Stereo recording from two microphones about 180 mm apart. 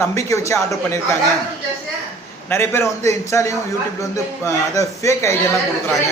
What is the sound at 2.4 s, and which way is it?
A man's voice, 10° left (ahead or behind).